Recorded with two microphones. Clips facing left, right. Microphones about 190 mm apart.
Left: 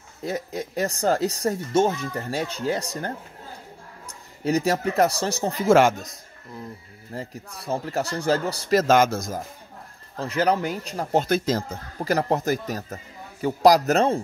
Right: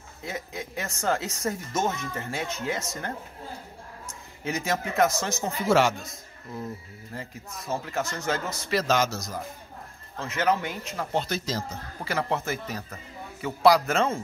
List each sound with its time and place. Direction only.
0.2 s speech: 40° left (ahead or behind)
4.5 s speech: 35° left (ahead or behind)
5.7 s speech: 50° left (ahead or behind)
7.2 s speech: 35° left (ahead or behind); by 9.4 s 50° left (ahead or behind)
10.1 s speech: 35° left (ahead or behind)